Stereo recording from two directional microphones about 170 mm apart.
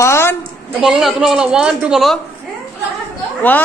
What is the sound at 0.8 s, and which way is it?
A woman's voice, centre (ahead or behind).